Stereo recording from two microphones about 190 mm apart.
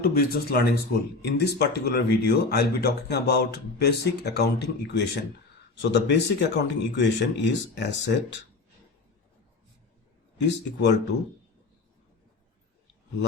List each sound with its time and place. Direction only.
0.0 s speech: 55° left (ahead or behind)
10.3 s speech: 65° left (ahead or behind)